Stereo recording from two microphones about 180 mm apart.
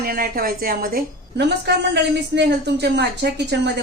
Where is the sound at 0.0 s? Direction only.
55° right (ahead or behind).